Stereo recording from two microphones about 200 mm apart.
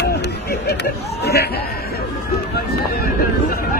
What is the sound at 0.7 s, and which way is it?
Speech, 55° left (ahead or behind).